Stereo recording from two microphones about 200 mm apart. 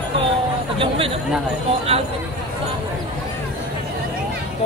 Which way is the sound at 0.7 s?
25° right (ahead or behind).